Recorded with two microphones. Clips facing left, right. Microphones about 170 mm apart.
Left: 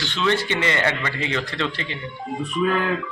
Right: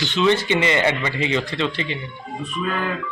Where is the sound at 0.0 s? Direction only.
20° right (ahead or behind).